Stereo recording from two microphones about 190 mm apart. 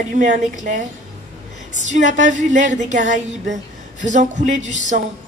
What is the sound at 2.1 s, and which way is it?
A woman's voice, 40° right (ahead or behind).